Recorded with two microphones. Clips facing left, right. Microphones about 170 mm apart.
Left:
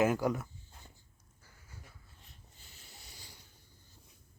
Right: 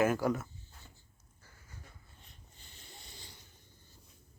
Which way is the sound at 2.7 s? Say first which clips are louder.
Right 3 dB; 5° left (ahead or behind).